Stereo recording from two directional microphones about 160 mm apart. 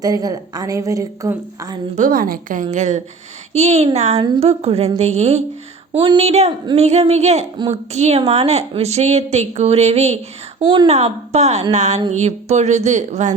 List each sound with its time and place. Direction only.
0.0 s a woman's voice: 25° right (ahead or behind)
2.0 s a woman's voice: 60° right (ahead or behind); by 4.2 s 45° right (ahead or behind)
4.2 s a sound: 35° right (ahead or behind)
6.7 s a woman's voice: 40° right (ahead or behind)